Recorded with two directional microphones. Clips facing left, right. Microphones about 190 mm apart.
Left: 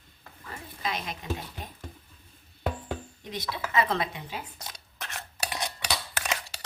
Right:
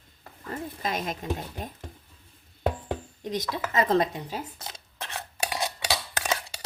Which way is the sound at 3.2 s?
45° right (ahead or behind).